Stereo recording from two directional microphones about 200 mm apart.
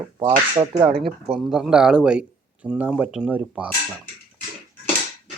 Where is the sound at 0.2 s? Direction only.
20° right (ahead or behind).